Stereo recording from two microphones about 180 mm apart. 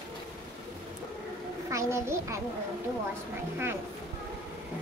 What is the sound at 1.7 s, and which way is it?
Speech, 15° right (ahead or behind).